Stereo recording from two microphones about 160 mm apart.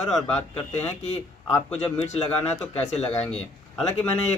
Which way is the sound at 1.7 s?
45° left (ahead or behind).